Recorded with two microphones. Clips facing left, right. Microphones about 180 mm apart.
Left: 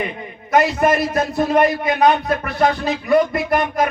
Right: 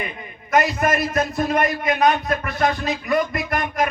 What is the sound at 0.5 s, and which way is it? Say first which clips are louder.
A man's voice: left 4 dB; 30° left (ahead or behind).